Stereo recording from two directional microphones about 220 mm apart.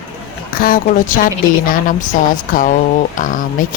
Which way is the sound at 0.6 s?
40° left (ahead or behind).